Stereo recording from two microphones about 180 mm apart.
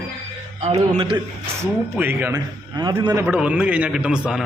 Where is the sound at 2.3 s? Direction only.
20° right (ahead or behind).